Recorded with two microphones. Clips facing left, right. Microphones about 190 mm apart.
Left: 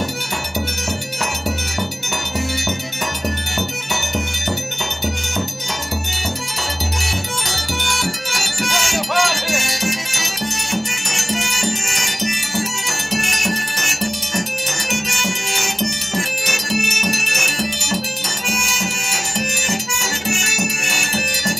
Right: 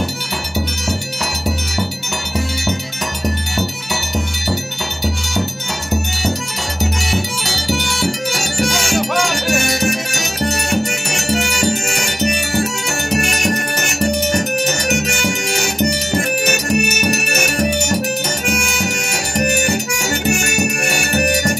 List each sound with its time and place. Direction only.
8.3 s music: 40° right (ahead or behind)
9.5 s music: 60° right (ahead or behind)
17.3 s music: 50° right (ahead or behind)
18.4 s music: 65° right (ahead or behind)